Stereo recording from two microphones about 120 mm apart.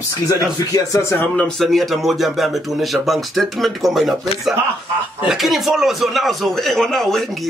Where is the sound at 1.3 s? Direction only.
5° left (ahead or behind).